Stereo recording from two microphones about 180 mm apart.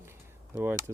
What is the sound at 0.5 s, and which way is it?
Speech, 15° right (ahead or behind).